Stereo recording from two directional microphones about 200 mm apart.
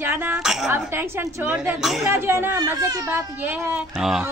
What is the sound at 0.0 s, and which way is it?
A child's voice, 10° right (ahead or behind).